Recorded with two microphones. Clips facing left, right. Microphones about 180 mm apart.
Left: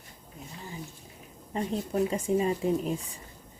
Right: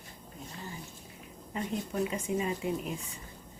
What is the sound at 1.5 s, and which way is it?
Speech, 35° left (ahead or behind).